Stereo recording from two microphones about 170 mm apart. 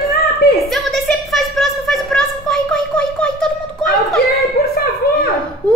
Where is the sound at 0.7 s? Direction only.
Centre (ahead or behind).